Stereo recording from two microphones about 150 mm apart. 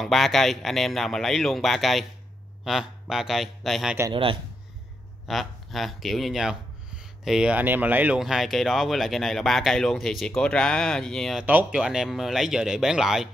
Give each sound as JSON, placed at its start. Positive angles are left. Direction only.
{"t": 0.0, "sound": "speech", "side_deg": 0}
{"t": 4.1, "sound": "a man's voice", "side_deg": -35}
{"t": 5.3, "sound": "speech", "side_deg": 0}